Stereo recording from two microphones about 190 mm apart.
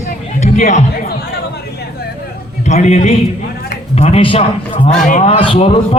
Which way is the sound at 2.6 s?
35° left (ahead or behind).